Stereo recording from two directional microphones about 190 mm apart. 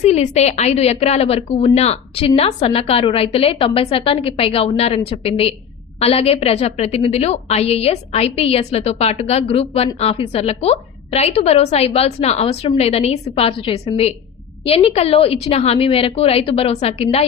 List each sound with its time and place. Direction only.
0.0 s a woman's voice: 35° left (ahead or behind)